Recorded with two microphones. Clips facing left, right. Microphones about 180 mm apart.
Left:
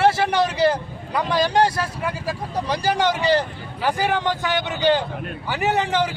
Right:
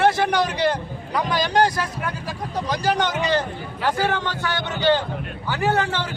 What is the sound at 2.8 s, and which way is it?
Speech, 10° left (ahead or behind).